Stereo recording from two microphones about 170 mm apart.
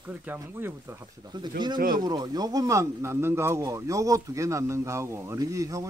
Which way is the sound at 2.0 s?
25° right (ahead or behind).